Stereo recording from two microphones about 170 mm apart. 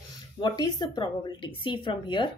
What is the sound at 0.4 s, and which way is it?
A woman's voice, 25° left (ahead or behind).